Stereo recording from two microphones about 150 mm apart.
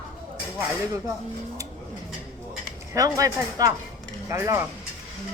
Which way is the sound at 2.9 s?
20° right (ahead or behind).